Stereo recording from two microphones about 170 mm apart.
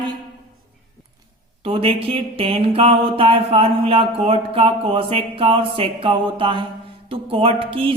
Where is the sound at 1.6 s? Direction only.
35° right (ahead or behind).